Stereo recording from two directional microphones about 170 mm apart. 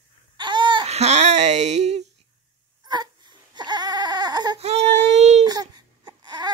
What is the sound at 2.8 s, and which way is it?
Baby cry, 25° right (ahead or behind).